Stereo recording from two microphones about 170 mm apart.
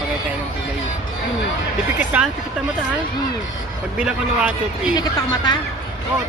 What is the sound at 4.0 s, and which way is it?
Speech, 5° right (ahead or behind).